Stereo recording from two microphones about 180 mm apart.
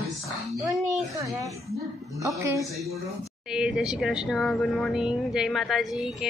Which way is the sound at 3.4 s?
5° right (ahead or behind).